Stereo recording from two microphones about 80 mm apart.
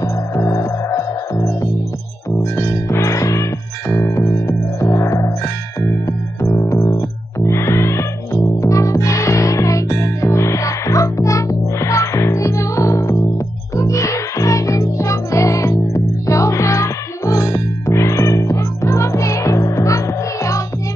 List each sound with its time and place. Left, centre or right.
0.3 s music: left
6.4 s music: left